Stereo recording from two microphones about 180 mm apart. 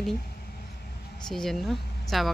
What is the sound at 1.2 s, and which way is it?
Speech, centre (ahead or behind).